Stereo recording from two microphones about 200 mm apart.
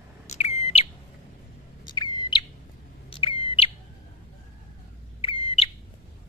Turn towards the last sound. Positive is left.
turn(degrees=30)  # may be behind; listen again after turning